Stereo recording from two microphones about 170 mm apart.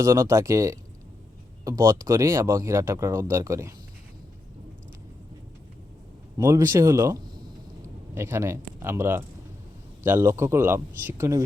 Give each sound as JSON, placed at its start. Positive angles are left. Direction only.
{"t": 0.0, "sound": "speech", "side_deg": -15}
{"t": 6.3, "sound": "speech", "side_deg": -15}